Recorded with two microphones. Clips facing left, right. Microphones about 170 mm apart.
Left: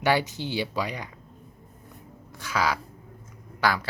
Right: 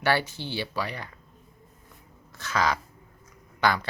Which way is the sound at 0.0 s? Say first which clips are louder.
Left 2 dB; 15° left (ahead or behind).